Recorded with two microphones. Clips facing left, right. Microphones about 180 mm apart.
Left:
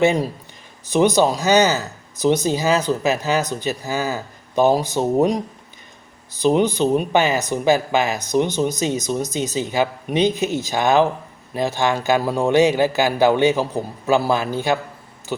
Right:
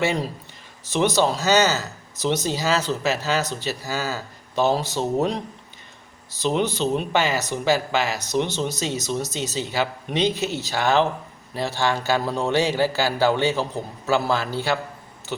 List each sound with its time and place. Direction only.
0.0 s speech: 15° left (ahead or behind)